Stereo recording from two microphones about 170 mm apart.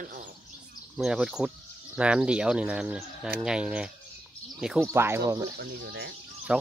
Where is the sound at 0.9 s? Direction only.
5° right (ahead or behind).